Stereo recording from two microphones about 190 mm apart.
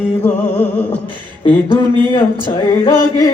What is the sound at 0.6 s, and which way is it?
Music, 5° left (ahead or behind).